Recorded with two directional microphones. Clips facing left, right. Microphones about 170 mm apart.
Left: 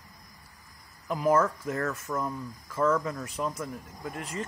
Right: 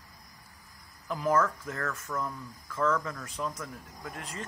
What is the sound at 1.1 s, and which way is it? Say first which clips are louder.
Speech: left 4 dB; 10° left (ahead or behind).